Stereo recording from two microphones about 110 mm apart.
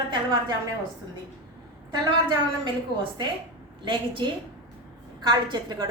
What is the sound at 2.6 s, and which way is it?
A woman's voice, 45° right (ahead or behind).